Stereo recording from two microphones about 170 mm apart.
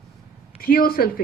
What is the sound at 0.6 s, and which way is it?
Speech, 60° left (ahead or behind).